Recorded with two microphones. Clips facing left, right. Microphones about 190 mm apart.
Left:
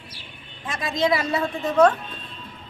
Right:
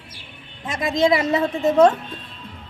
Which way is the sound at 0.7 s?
25° right (ahead or behind).